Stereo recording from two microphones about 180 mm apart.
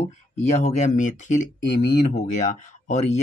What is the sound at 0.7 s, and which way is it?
Speech, 40° left (ahead or behind).